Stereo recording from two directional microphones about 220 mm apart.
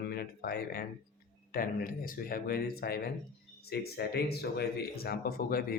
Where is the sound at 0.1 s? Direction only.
45° left (ahead or behind).